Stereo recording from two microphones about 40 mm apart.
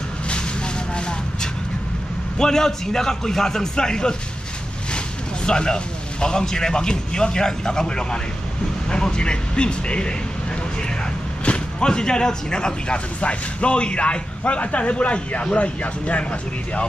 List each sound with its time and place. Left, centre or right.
0.9 s vehicle: left
2.3 s a man's voice: centre
11.4 s speech: left